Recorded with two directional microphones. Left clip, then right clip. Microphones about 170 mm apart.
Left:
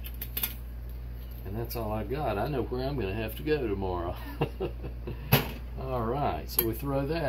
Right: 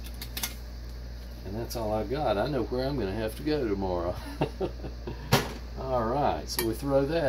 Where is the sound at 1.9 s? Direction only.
25° right (ahead or behind).